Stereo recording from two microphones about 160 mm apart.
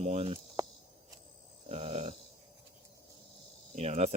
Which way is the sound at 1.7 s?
40° right (ahead or behind).